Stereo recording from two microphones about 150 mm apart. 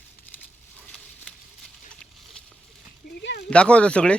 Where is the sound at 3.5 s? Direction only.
5° left (ahead or behind).